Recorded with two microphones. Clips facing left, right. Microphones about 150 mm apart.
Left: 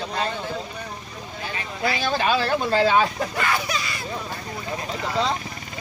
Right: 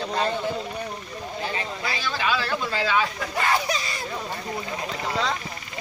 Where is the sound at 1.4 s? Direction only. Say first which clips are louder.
Left 3 dB; 30° right (ahead or behind).